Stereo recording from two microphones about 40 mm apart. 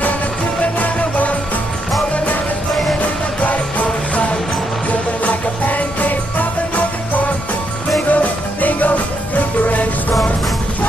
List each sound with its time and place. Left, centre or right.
0.7 s music: left
3.0 s music: left
8.1 s music: left